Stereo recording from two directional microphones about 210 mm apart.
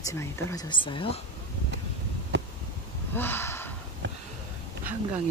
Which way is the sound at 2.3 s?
55° right (ahead or behind).